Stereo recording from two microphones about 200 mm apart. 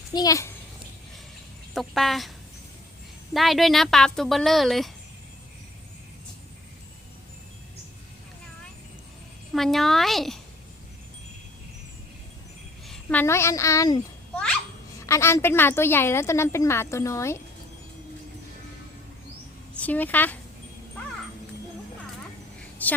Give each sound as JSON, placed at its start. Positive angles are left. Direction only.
{"t": 0.1, "sound": "a child's voice", "side_deg": 20}
{"t": 1.7, "sound": "speech", "side_deg": 0}
{"t": 3.3, "sound": "speech", "side_deg": 0}
{"t": 9.5, "sound": "speech", "side_deg": 0}
{"t": 12.9, "sound": "a woman's voice", "side_deg": 5}
{"t": 19.7, "sound": "speech", "side_deg": 10}
{"t": 22.8, "sound": "a woman's voice", "side_deg": 10}